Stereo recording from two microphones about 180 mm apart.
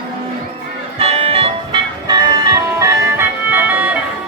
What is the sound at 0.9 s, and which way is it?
Music, 30° right (ahead or behind).